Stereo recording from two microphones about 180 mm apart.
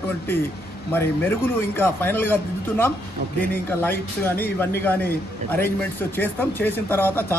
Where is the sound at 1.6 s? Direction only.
10° left (ahead or behind).